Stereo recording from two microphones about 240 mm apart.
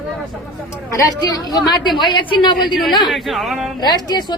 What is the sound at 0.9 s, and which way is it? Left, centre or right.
A woman's voice, centre.